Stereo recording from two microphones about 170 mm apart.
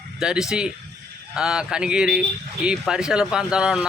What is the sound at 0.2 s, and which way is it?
Speech, 5° right (ahead or behind).